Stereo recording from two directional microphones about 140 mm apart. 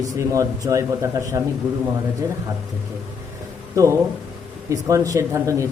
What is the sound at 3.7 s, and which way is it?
A man's voice, 20° right (ahead or behind).